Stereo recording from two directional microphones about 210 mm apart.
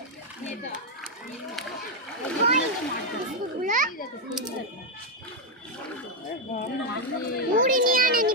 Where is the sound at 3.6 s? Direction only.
40° right (ahead or behind).